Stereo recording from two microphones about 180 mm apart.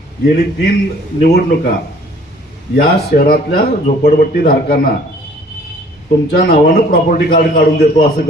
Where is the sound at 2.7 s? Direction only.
55° left (ahead or behind).